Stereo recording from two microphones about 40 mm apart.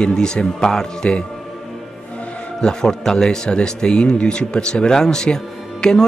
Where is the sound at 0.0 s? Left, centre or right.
Centre.